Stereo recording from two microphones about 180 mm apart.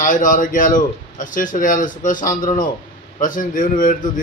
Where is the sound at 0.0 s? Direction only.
45° left (ahead or behind).